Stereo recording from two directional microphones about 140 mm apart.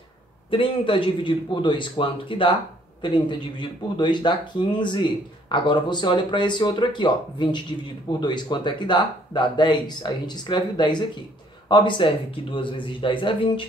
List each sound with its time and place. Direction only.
0.5 s speech: 40° left (ahead or behind)